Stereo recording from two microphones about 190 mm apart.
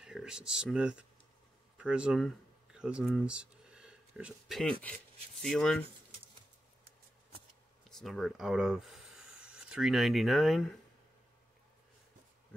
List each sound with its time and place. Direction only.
0.0 s speech: 5° right (ahead or behind)
7.9 s speech: centre (ahead or behind)